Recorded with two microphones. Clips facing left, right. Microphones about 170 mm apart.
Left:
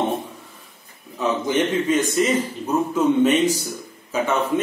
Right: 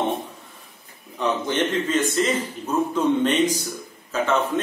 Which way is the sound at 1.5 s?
10° left (ahead or behind).